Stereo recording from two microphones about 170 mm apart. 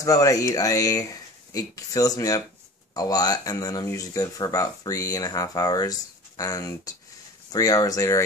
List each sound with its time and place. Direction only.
0.0 s speech: 20° left (ahead or behind)